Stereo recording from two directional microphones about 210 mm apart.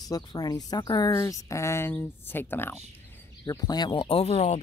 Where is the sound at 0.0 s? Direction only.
20° left (ahead or behind).